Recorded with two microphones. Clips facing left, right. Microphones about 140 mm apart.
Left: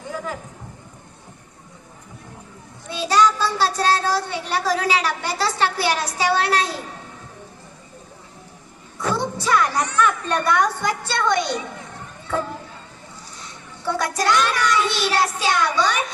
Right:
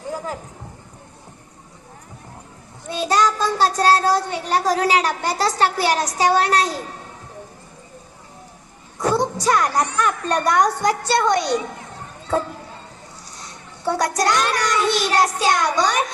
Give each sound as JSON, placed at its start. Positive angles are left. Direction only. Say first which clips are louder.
{"t": 2.9, "sound": "a child's voice", "louder": "left 1 dB", "side_deg": -45}
{"t": 9.0, "sound": "a woman's voice", "louder": "right 4 dB", "side_deg": -40}
{"t": 13.8, "sound": "a woman's voice", "louder": "right 2 dB", "side_deg": -40}